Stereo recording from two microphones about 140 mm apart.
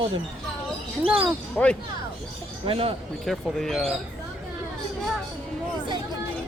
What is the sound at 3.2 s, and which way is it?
Speech, centre (ahead or behind).